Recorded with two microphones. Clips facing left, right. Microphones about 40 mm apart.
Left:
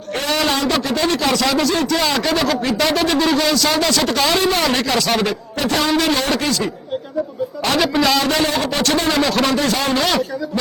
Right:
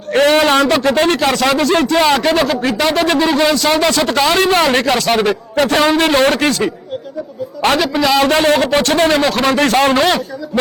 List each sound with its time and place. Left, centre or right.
0.1 s a man's voice: right
7.8 s a man's voice: centre
8.2 s a man's voice: right